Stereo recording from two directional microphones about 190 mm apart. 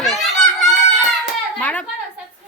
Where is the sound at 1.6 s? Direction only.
10° left (ahead or behind).